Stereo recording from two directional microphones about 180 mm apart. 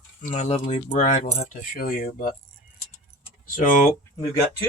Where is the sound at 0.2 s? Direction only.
40° left (ahead or behind).